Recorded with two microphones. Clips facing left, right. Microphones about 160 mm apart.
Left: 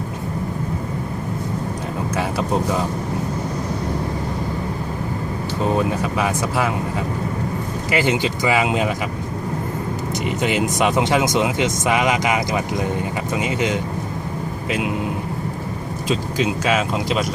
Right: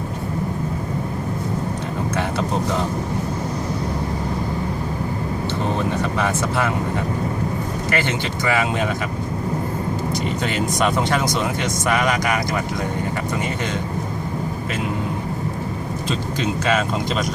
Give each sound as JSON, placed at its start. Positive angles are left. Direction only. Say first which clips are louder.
{"t": 6.0, "sound": "speech", "louder": "even", "side_deg": 5}
{"t": 7.9, "sound": "speech", "louder": "left 5 dB", "side_deg": 15}
{"t": 10.2, "sound": "speech", "louder": "left 6 dB", "side_deg": 15}
{"t": 16.0, "sound": "speech", "louder": "left 4 dB", "side_deg": 5}